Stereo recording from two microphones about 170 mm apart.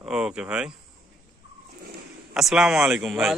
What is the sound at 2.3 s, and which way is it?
Speech, 5° right (ahead or behind).